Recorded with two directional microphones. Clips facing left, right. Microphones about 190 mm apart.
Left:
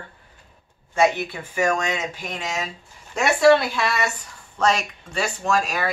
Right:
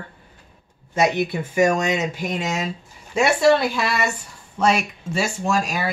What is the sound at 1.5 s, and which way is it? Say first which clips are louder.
Speech: right 4 dB; 10° right (ahead or behind).